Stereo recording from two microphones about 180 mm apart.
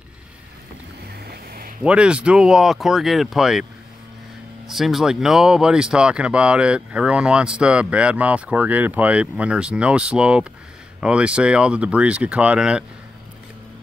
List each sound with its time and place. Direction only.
1.0 s boat: 60° right (ahead or behind)
1.8 s speech: 5° right (ahead or behind)
4.6 s speech: centre (ahead or behind)